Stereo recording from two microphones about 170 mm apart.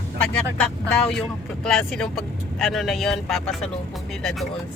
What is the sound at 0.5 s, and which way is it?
Speech, 5° left (ahead or behind).